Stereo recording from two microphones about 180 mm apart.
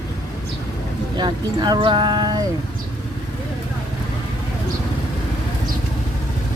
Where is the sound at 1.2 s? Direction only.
25° right (ahead or behind).